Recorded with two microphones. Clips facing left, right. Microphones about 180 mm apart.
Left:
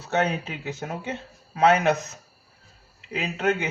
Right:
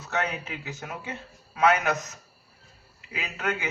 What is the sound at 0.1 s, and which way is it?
A man's voice, 30° left (ahead or behind).